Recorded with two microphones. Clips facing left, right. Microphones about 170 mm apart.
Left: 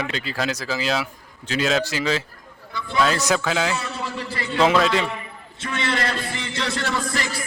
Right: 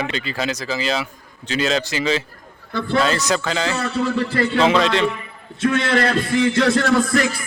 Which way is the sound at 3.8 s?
55° right (ahead or behind).